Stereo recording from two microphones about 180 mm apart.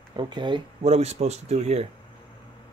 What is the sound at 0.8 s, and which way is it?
Speech, 35° right (ahead or behind).